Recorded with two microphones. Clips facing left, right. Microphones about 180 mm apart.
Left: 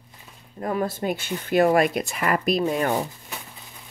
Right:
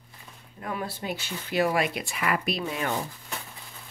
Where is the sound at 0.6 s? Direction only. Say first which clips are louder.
Left 8 dB; 40° left (ahead or behind).